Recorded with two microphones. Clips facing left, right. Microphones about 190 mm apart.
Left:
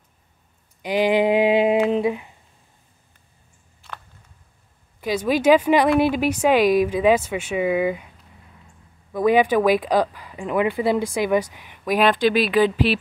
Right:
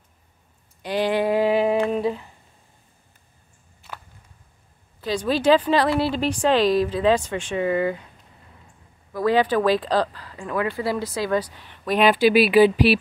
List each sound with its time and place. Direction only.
0.8 s a sound: 15° left (ahead or behind)
1.9 s humming: 20° left (ahead or behind)
3.8 s a sound: centre (ahead or behind)
5.0 s speech: 10° left (ahead or behind)
9.1 s speech: 15° left (ahead or behind)
12.0 s speech: 5° right (ahead or behind)